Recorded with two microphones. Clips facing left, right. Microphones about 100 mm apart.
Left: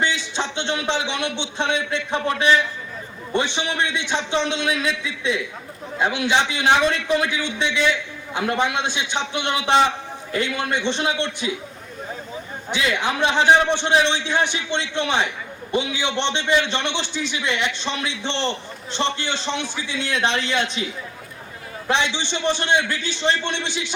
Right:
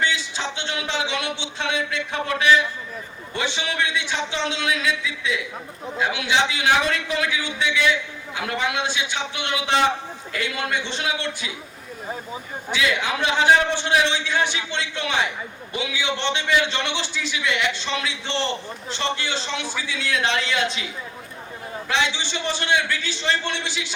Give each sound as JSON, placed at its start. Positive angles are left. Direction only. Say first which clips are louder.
{"t": 0.3, "sound": "a man's voice", "louder": "left 3 dB", "side_deg": 20}
{"t": 12.7, "sound": "a man's voice", "louder": "left 1 dB", "side_deg": 20}
{"t": 21.8, "sound": "a man's voice", "louder": "left 2 dB", "side_deg": 20}